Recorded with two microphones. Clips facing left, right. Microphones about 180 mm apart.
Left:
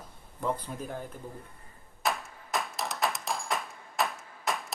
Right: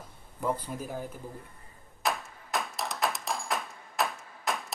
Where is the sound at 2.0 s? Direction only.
Centre (ahead or behind).